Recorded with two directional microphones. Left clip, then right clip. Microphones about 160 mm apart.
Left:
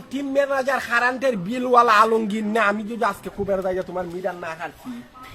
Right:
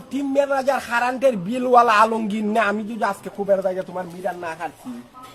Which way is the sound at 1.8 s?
20° left (ahead or behind).